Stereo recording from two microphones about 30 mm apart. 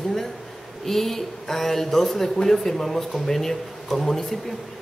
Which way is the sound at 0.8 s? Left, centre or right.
Centre.